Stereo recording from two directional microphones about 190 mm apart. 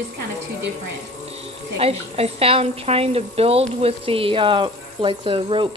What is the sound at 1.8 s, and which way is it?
A woman's voice, 30° right (ahead or behind).